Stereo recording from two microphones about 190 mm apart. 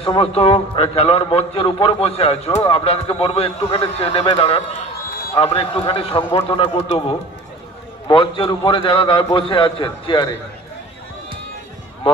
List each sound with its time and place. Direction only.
0.0 s a man's voice: 30° left (ahead or behind)